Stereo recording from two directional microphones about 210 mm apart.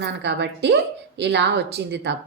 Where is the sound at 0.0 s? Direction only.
55° right (ahead or behind).